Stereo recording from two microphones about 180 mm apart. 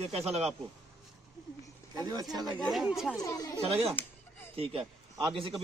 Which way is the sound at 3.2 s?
20° left (ahead or behind).